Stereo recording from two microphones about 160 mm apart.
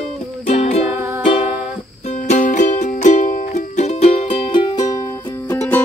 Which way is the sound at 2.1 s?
55° left (ahead or behind).